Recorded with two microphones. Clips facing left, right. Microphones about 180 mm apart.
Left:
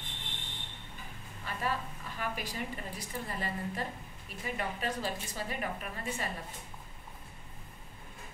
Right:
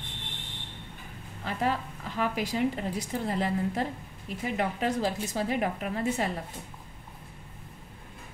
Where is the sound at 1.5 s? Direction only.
90° right.